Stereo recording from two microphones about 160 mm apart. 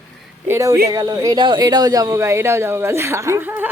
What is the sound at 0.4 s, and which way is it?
Speech, 15° right (ahead or behind).